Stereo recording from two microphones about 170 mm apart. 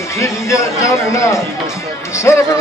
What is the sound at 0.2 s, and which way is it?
Speech, 15° left (ahead or behind).